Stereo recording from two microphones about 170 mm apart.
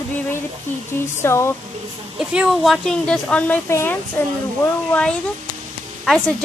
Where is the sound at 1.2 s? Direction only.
15° left (ahead or behind).